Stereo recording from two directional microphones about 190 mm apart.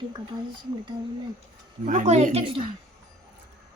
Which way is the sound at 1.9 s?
40° right (ahead or behind).